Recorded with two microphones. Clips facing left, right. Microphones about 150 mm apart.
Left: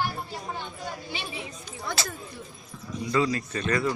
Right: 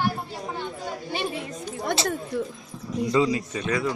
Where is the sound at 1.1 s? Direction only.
50° right (ahead or behind).